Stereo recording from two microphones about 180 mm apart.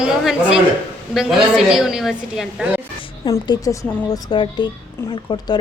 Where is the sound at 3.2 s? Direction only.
20° left (ahead or behind).